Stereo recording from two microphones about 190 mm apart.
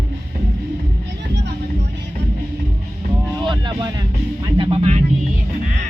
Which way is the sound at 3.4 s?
25° right (ahead or behind).